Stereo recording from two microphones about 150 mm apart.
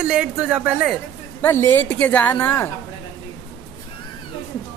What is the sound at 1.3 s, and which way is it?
A woman's voice, 15° left (ahead or behind).